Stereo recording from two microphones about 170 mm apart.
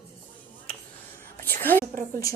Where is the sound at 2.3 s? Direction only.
20° left (ahead or behind).